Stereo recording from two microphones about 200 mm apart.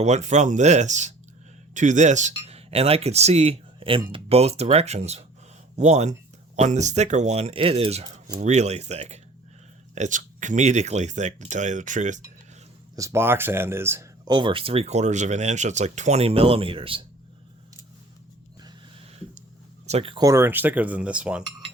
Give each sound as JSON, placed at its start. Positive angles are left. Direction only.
{"t": 0.0, "sound": "speech", "side_deg": -35}
{"t": 13.0, "sound": "speech", "side_deg": -15}
{"t": 19.9, "sound": "speech", "side_deg": -30}